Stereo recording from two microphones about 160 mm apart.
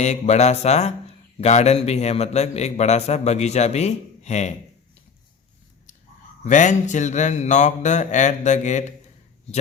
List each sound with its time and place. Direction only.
0.0 s a man's voice: 45° left (ahead or behind)
6.4 s a man's voice: 50° left (ahead or behind)